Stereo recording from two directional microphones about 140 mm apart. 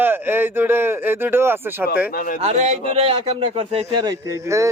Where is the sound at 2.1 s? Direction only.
90° left.